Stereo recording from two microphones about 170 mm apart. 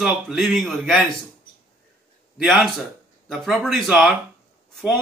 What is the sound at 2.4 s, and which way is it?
A man's voice, centre (ahead or behind).